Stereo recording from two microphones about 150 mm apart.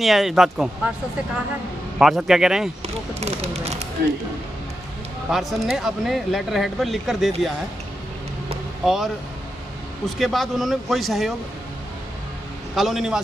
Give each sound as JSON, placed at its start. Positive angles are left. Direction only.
{"t": 0.0, "sound": "speech", "side_deg": 0}
{"t": 2.0, "sound": "speech", "side_deg": 0}
{"t": 3.2, "sound": "speech", "side_deg": -45}
{"t": 5.3, "sound": "speech", "side_deg": 0}
{"t": 8.8, "sound": "speech", "side_deg": 0}
{"t": 12.7, "sound": "speech", "side_deg": 0}